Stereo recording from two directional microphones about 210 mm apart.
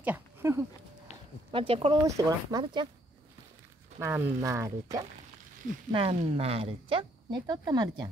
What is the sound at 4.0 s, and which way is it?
Speech, 10° right (ahead or behind).